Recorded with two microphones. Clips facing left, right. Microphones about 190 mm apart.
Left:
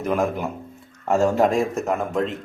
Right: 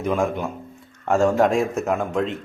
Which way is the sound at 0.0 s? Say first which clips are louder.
Even; 5° left (ahead or behind).